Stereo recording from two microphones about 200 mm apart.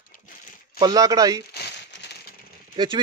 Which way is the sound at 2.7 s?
25° right (ahead or behind).